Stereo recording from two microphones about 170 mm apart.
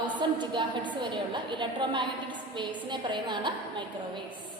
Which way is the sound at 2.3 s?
25° right (ahead or behind).